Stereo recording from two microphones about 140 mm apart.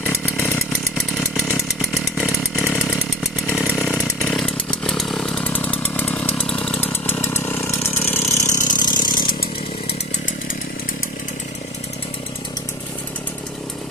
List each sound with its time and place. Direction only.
0.0 s chainsaw: 15° left (ahead or behind)
0.9 s chainsaw: centre (ahead or behind)
3.6 s chainsaw: 5° left (ahead or behind)
6.8 s engine: 15° left (ahead or behind); by 9.5 s 35° left (ahead or behind)